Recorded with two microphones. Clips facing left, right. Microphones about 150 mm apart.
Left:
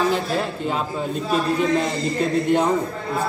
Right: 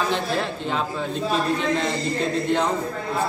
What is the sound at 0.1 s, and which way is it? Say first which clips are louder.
Speech: left 2 dB; 5° left (ahead or behind).